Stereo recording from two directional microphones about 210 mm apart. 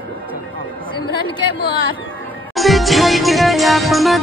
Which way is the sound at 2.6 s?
Centre (ahead or behind).